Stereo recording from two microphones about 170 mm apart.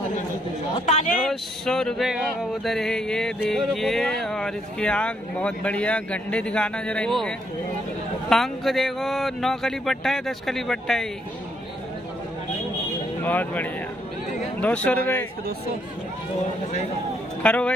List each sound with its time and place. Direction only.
0.8 s speech: 45° left (ahead or behind)
1.2 s a sound: 5° left (ahead or behind)
13.2 s speech: 10° left (ahead or behind)
17.4 s speech: 5° left (ahead or behind)